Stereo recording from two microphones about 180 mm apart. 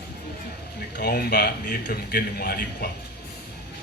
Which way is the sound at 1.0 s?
60° left (ahead or behind).